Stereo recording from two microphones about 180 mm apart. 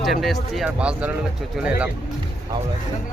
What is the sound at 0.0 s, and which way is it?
Speech, centre (ahead or behind).